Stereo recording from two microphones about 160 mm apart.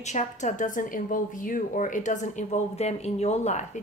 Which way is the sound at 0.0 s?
45° left (ahead or behind).